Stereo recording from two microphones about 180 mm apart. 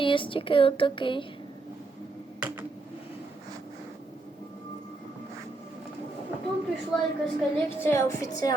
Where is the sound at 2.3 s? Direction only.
10° right (ahead or behind).